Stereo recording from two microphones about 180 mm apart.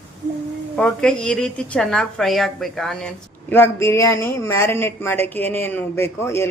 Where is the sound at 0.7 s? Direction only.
5° left (ahead or behind).